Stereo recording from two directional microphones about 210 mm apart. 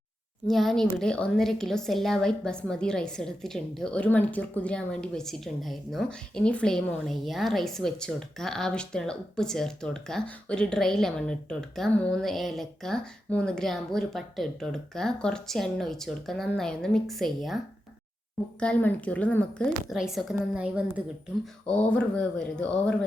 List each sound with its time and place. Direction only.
0.4 s a woman's voice: centre (ahead or behind)
18.6 s a woman's voice: 5° left (ahead or behind)
21.7 s a woman's voice: 5° left (ahead or behind)